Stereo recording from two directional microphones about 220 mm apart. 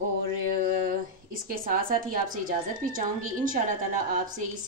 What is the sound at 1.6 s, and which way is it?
Speech, 40° right (ahead or behind).